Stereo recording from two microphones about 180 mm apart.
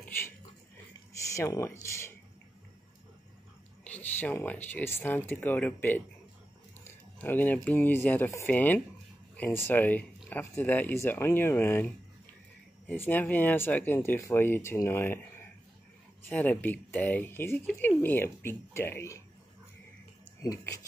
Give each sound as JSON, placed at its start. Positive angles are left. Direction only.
{"t": 1.3, "sound": "a sound", "side_deg": 15}
{"t": 3.8, "sound": "speech", "side_deg": 10}
{"t": 20.4, "sound": "speech", "side_deg": 20}